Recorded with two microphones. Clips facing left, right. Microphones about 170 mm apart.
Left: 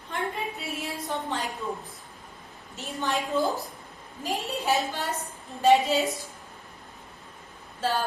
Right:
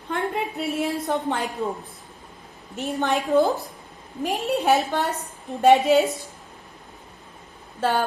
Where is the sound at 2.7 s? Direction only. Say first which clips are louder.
Right 6 dB; 60° right (ahead or behind).